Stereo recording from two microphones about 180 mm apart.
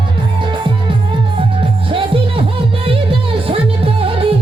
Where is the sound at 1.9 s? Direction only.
30° right (ahead or behind).